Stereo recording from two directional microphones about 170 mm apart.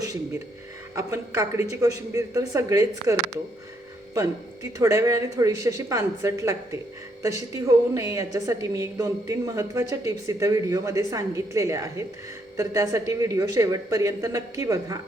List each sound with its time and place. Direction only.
0.0 s a woman's voice: 20° right (ahead or behind)